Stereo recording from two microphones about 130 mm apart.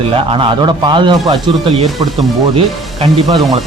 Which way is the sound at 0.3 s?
40° right (ahead or behind).